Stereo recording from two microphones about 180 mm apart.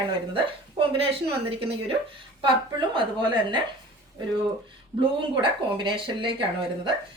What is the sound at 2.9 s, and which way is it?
Speech, 25° right (ahead or behind).